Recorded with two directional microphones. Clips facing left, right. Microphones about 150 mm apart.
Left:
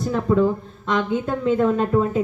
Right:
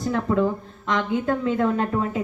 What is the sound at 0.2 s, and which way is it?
Speech, centre (ahead or behind).